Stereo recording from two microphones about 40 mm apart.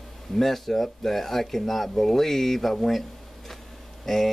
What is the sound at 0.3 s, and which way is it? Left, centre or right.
Speech, centre.